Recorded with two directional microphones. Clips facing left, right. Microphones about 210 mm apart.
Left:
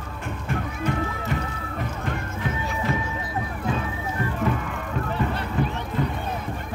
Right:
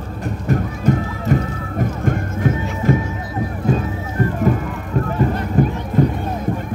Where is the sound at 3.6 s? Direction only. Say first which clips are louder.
Right 8 dB; 40° right (ahead or behind).